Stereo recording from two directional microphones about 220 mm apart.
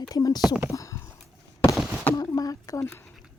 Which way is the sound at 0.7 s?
15° left (ahead or behind).